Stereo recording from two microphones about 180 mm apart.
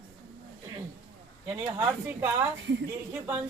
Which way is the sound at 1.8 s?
15° right (ahead or behind).